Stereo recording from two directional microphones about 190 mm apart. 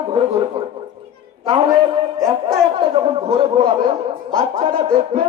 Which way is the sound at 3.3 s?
30° right (ahead or behind).